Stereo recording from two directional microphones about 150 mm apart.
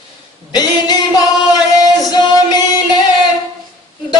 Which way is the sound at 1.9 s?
25° left (ahead or behind).